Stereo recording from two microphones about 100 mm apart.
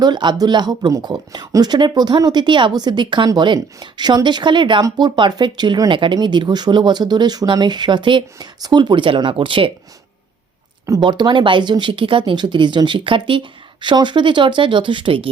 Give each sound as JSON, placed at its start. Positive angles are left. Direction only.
{"t": 0.0, "sound": "speech", "side_deg": -50}
{"t": 11.0, "sound": "speech", "side_deg": -50}